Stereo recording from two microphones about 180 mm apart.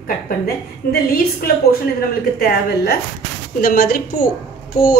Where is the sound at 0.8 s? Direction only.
60° left (ahead or behind).